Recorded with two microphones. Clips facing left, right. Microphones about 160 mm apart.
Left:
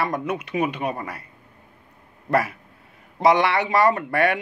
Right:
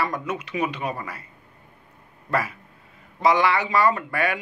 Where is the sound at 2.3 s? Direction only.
65° left (ahead or behind).